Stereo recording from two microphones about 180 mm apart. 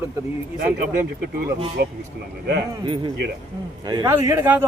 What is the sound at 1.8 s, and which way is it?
Speech, 65° right (ahead or behind).